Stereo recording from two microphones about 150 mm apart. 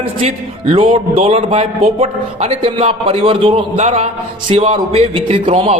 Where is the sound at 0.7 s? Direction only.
35° right (ahead or behind).